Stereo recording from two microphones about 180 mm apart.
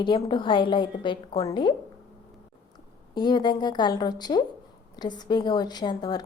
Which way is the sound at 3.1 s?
25° left (ahead or behind).